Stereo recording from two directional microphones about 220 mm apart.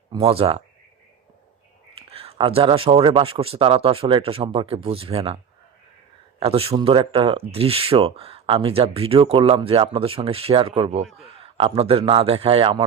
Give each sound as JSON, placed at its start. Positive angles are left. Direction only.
{"t": 0.1, "sound": "speech", "side_deg": -20}
{"t": 2.0, "sound": "speech", "side_deg": -25}
{"t": 6.4, "sound": "speech", "side_deg": -25}